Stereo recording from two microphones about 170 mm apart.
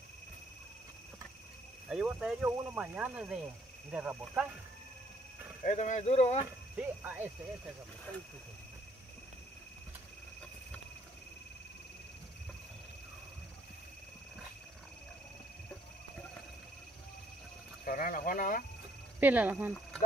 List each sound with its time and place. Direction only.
1.9 s speech: 5° right (ahead or behind)
5.6 s speech: 45° left (ahead or behind)
6.4 s speech: 10° right (ahead or behind)
17.8 s speech: 55° left (ahead or behind)
19.1 s speech: 10° right (ahead or behind)